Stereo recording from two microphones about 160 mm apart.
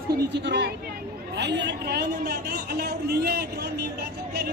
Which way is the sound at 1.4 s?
90° right.